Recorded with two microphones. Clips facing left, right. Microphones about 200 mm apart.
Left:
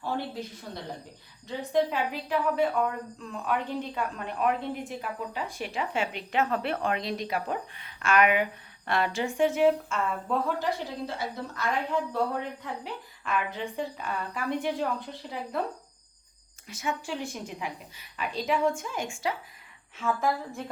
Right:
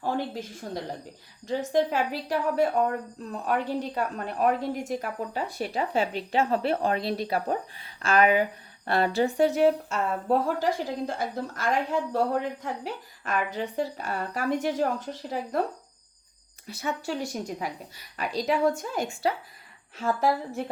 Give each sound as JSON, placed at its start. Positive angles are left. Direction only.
{"t": 1.5, "sound": "speech", "side_deg": -45}
{"t": 16.6, "sound": "speech", "side_deg": -35}